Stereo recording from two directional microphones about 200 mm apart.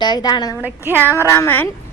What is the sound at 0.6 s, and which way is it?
Speech, 10° right (ahead or behind).